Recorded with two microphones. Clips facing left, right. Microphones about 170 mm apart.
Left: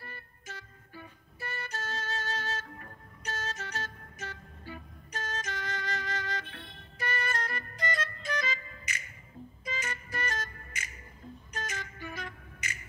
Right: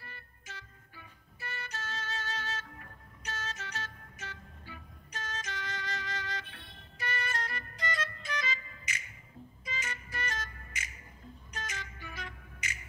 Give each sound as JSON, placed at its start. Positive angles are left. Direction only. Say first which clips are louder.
{"t": 0.0, "sound": "music", "louder": "left 5 dB", "side_deg": 45}